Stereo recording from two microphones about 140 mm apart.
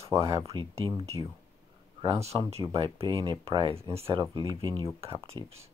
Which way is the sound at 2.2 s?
45° right (ahead or behind).